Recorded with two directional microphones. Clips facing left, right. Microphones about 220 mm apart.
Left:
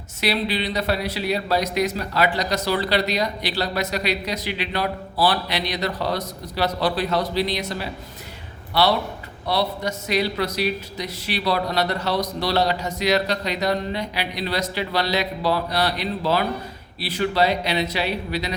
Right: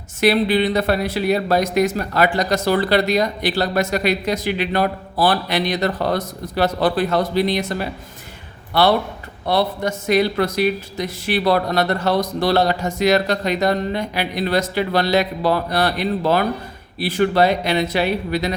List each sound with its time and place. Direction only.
0.2 s a man's voice: 50° right (ahead or behind)